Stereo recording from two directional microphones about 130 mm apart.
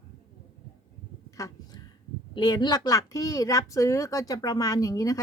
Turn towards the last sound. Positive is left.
turn(degrees=25)  # may be behind; listen again after turning